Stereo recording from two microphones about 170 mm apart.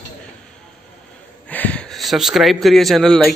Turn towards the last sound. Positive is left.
turn(degrees=0)  # may be behind; listen again after turning